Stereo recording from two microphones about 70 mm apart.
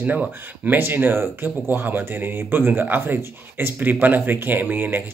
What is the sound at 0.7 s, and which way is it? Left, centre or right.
Speech, right.